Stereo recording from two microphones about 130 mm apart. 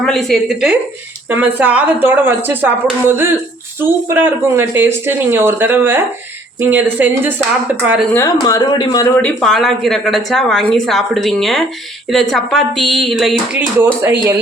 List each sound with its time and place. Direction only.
0.0 s a woman's voice: centre (ahead or behind); by 7.4 s 15° right (ahead or behind)
8.1 s speech: 25° left (ahead or behind)
9.0 s a woman's voice: 10° left (ahead or behind); by 14.3 s 15° right (ahead or behind)